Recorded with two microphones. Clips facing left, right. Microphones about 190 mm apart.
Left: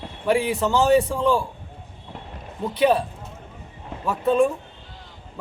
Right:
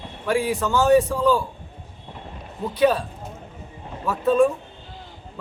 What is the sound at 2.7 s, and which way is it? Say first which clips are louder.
Speech: even; 25° left (ahead or behind).